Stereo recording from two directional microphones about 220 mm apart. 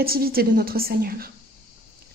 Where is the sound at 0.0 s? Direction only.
45° right (ahead or behind).